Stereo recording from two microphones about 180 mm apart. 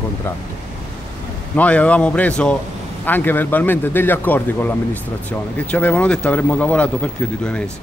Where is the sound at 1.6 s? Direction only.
5° left (ahead or behind).